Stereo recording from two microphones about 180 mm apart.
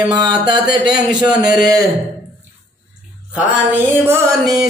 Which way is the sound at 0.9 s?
20° right (ahead or behind).